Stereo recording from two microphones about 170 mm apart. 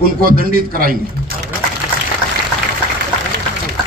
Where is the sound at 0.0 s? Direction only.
60° right (ahead or behind).